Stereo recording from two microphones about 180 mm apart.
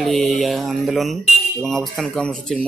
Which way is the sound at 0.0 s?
Centre (ahead or behind).